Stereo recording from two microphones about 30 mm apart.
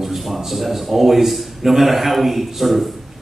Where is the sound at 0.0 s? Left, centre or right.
Centre.